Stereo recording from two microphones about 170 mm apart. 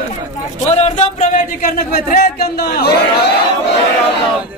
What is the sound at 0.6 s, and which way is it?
Speech, 40° left (ahead or behind).